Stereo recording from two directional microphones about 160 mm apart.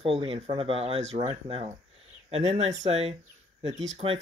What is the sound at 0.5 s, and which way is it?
Speech, 35° right (ahead or behind).